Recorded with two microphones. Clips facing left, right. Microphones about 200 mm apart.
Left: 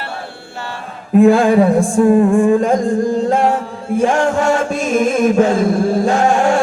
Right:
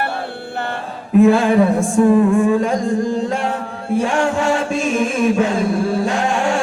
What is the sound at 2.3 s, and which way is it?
Chant, 50° left (ahead or behind).